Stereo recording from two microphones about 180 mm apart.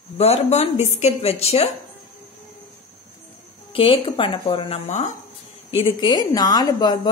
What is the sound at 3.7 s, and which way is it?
Speech, 30° left (ahead or behind).